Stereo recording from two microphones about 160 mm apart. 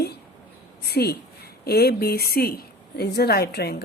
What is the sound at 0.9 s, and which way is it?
A woman's voice, 85° left.